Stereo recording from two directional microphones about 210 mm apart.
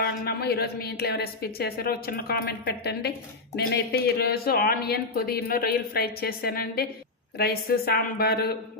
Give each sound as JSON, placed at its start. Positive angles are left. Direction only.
{"t": 0.0, "sound": "speech", "side_deg": 50}